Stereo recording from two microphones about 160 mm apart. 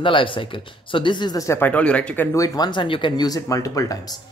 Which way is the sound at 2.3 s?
25° left (ahead or behind).